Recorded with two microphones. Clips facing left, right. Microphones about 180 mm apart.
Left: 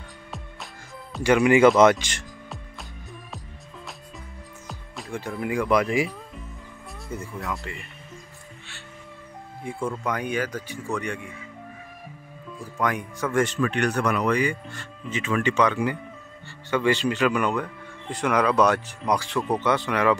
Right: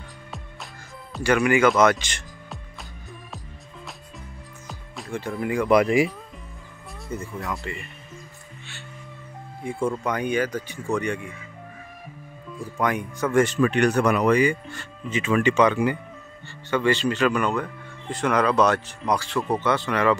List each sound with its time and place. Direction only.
1.2 s speech: 20° left (ahead or behind)
2.0 s music: 5° left (ahead or behind)
4.6 s music: centre (ahead or behind)
5.7 s speech: 10° right (ahead or behind)
7.1 s speech: centre (ahead or behind)
9.6 s speech: centre (ahead or behind)
12.7 s speech: centre (ahead or behind)
13.6 s speech: 15° right (ahead or behind)
16.7 s speech: 10° left (ahead or behind)